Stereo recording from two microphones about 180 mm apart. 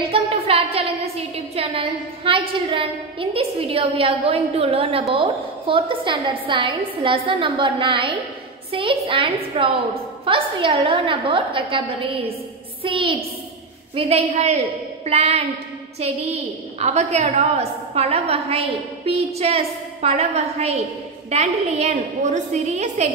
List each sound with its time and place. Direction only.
0.0 s a woman's voice: 30° right (ahead or behind)